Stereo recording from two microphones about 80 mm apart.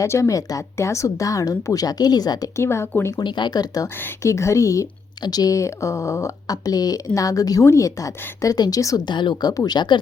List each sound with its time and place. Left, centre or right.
0.0 s speech: left
2.6 s speech: left
3.2 s speech: left
4.2 s speech: left
5.2 s speech: left
9.0 s speech: left